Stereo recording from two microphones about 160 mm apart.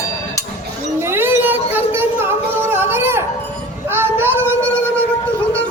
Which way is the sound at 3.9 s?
15° right (ahead or behind).